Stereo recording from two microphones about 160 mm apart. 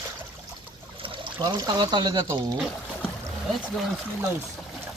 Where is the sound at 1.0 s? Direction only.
30° right (ahead or behind).